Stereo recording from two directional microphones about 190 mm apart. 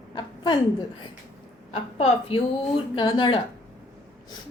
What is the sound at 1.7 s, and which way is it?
A woman's voice, 35° left (ahead or behind).